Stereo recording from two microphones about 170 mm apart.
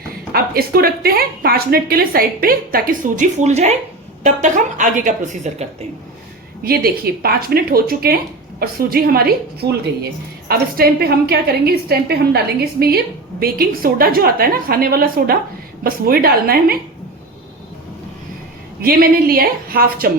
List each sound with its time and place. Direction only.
0.3 s a woman's voice: 65° right (ahead or behind); by 5.6 s 45° right (ahead or behind)
6.7 s a woman's voice: 65° right (ahead or behind)
13.4 s a woman's voice: 60° right (ahead or behind)
18.8 s a woman's voice: 60° right (ahead or behind)